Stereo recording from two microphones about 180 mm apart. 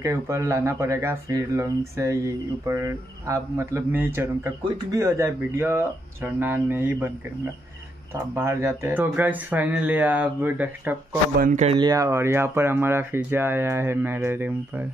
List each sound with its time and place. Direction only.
0.0 s speech: 15° right (ahead or behind)
8.1 s speech: 15° right (ahead or behind)
11.3 s a man's voice: 45° right (ahead or behind)
11.7 s speech: 20° right (ahead or behind)